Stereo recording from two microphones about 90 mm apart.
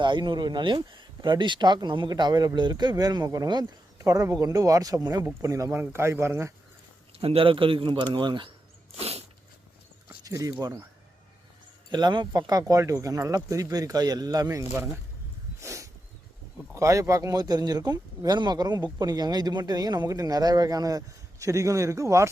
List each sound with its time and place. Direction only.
0.0 s speech: 55° right (ahead or behind)
4.0 s a man's voice: 35° right (ahead or behind)
7.2 s speech: 85° right; by 8.4 s 60° right (ahead or behind)
10.2 s speech: 40° right (ahead or behind)
11.9 s speech: 55° right (ahead or behind)
15.6 s a sound: 35° right (ahead or behind)
16.7 s speech: 35° right (ahead or behind)